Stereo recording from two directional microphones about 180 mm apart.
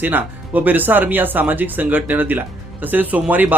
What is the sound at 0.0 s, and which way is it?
Speech, 10° right (ahead or behind).